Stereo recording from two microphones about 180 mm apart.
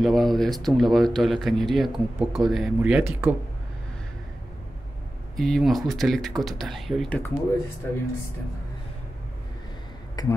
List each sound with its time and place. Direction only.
0.0 s speech: centre (ahead or behind)
5.3 s speech: centre (ahead or behind)
10.2 s speech: 25° left (ahead or behind)